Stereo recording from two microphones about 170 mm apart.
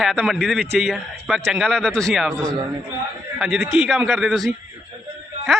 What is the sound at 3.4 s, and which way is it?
A man's voice, 5° right (ahead or behind).